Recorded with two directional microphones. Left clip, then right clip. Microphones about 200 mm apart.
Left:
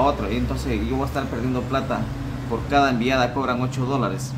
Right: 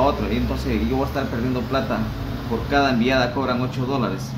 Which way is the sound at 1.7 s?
15° left (ahead or behind).